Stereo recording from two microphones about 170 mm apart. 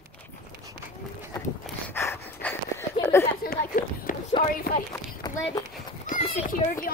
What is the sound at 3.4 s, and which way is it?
Speech, 60° left (ahead or behind).